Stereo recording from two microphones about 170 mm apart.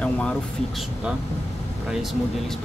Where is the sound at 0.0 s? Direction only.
5° left (ahead or behind).